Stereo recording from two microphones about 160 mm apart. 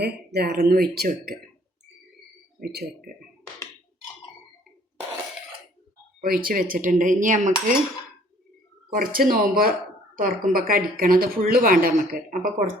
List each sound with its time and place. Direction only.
0.0 s speech: 85° right
2.6 s speech: 70° right (ahead or behind)
6.2 s a woman's voice: 65° right (ahead or behind)
9.0 s a woman's voice: 65° right (ahead or behind)